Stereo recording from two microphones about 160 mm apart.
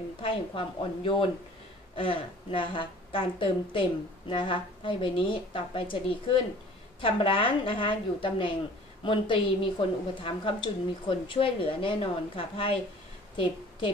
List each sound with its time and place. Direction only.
0.2 s a woman's voice: 35° left (ahead or behind)